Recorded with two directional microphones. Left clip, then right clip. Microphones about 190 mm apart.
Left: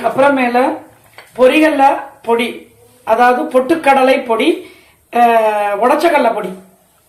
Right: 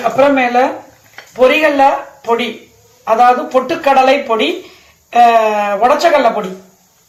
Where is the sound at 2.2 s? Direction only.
15° left (ahead or behind).